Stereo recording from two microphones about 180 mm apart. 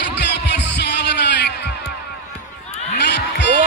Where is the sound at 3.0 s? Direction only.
70° left (ahead or behind).